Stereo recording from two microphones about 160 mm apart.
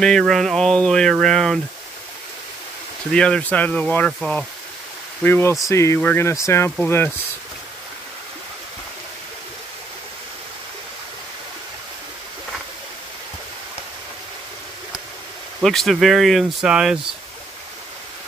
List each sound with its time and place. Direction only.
0.0 s speech: 5° left (ahead or behind)
3.1 s speech: 5° left (ahead or behind)
15.6 s speech: centre (ahead or behind)